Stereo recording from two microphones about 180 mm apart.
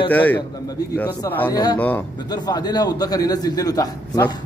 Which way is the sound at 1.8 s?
10° left (ahead or behind).